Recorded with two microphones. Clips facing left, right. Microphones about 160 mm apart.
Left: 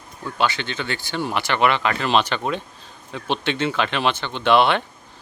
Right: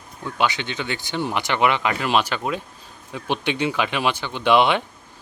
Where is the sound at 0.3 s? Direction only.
15° right (ahead or behind).